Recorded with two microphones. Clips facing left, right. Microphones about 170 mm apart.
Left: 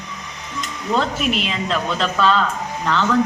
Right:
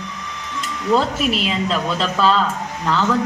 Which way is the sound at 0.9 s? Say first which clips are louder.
Right 2 dB; 5° right (ahead or behind).